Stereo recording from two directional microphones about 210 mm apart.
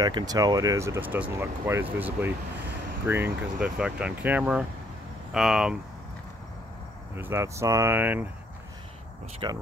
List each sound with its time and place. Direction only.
0.0 s speech: 20° right (ahead or behind); by 5.8 s centre (ahead or behind)
7.2 s speech: 10° right (ahead or behind)
9.4 s speech: 20° right (ahead or behind)